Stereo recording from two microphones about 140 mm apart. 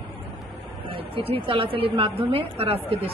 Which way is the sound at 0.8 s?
40° right (ahead or behind).